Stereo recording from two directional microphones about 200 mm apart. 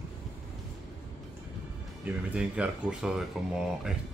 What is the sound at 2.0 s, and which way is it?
Speech, 5° right (ahead or behind).